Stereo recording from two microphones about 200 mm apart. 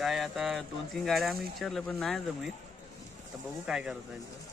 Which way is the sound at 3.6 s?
5° right (ahead or behind).